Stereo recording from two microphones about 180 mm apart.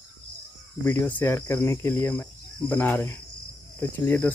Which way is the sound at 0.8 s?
10° left (ahead or behind).